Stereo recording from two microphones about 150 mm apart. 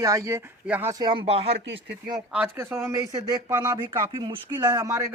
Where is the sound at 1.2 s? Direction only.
40° right (ahead or behind).